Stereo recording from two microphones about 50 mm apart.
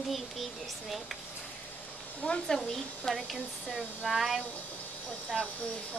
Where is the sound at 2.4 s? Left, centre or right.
Centre.